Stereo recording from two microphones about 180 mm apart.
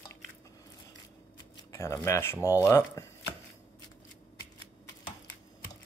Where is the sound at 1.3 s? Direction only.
20° left (ahead or behind).